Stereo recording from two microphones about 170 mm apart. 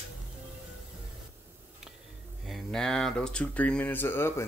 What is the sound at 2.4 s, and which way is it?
Speech, centre (ahead or behind).